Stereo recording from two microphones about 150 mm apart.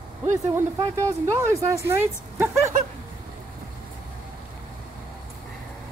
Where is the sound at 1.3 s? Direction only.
20° right (ahead or behind).